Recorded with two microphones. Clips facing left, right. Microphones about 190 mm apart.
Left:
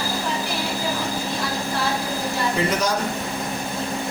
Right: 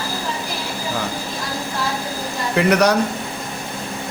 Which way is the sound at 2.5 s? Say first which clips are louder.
Right 10 dB; 70° right (ahead or behind).